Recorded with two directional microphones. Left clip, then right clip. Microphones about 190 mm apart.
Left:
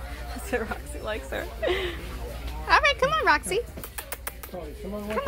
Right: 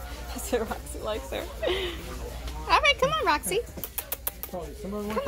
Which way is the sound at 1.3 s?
Centre (ahead or behind).